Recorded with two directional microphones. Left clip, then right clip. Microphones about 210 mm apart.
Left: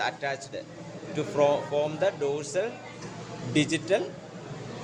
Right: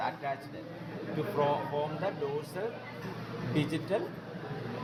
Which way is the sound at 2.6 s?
45° left (ahead or behind).